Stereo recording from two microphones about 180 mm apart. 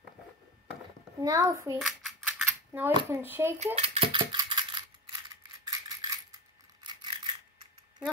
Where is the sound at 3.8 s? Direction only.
30° right (ahead or behind).